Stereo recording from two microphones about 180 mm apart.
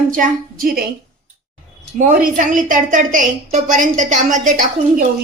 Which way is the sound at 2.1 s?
45° right (ahead or behind).